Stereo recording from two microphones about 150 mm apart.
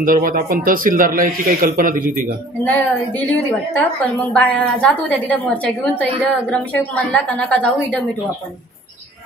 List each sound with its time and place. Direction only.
0.0 s speech: 70° right (ahead or behind)
2.6 s a woman's voice: 10° left (ahead or behind)